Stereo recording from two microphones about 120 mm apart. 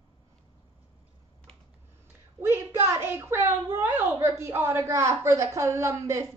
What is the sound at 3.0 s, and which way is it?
A woman's voice, 20° right (ahead or behind).